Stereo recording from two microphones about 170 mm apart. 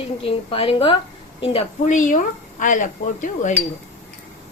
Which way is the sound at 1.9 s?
50° left (ahead or behind).